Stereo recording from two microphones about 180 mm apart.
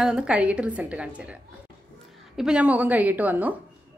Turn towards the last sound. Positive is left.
turn(degrees=-10)  # may be behind; listen again after turning